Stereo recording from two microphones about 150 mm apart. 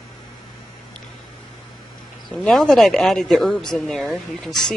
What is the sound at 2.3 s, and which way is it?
Speech, 5° left (ahead or behind).